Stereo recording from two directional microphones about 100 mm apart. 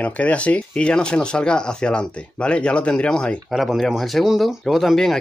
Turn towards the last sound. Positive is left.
turn(degrees=0)  # may be behind; listen again after turning